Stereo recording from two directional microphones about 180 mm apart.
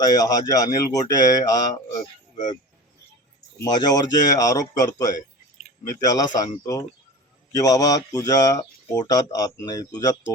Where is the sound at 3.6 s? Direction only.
20° left (ahead or behind).